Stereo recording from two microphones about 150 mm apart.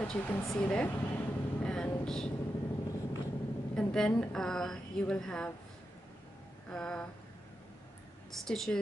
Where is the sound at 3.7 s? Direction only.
5° left (ahead or behind).